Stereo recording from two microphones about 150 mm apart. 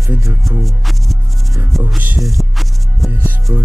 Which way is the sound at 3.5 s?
25° right (ahead or behind).